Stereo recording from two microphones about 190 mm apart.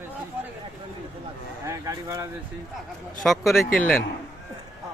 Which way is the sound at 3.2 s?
Centre (ahead or behind).